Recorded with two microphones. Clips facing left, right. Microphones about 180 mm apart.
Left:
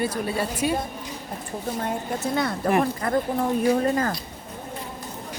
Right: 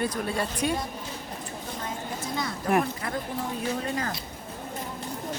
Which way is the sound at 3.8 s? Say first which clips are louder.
Left 8 dB; 50° left (ahead or behind).